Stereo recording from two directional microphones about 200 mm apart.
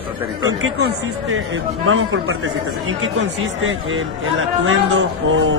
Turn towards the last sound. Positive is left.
turn(degrees=-75)  # may be behind; listen again after turning